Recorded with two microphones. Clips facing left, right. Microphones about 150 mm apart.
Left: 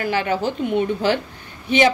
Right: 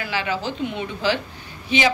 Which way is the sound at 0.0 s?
50° left (ahead or behind).